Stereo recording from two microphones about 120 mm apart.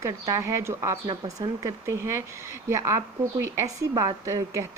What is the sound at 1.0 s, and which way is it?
Speech, 45° right (ahead or behind).